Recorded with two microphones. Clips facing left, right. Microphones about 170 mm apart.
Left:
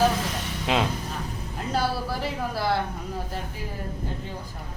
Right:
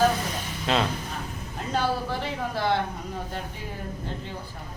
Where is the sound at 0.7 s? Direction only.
15° left (ahead or behind).